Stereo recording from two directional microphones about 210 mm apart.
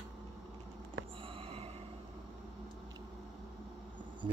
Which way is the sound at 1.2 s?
25° right (ahead or behind).